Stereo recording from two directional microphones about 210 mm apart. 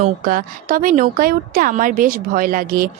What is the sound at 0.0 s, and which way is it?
Speech, 40° right (ahead or behind).